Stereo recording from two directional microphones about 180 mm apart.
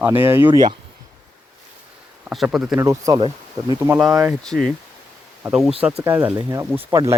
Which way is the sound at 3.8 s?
10° right (ahead or behind).